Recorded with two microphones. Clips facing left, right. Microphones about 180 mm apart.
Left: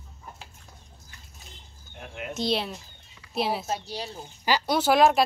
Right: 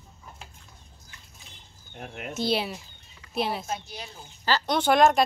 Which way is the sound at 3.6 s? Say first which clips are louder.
Left 3 dB; 30° left (ahead or behind).